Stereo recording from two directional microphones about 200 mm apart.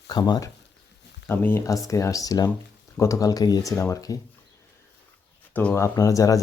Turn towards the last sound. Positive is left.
turn(degrees=15)  # may be behind; listen again after turning